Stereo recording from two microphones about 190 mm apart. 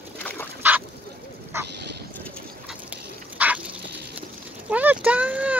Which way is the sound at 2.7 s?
5° right (ahead or behind).